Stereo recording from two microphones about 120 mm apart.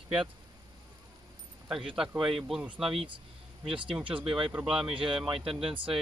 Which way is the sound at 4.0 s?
45° right (ahead or behind).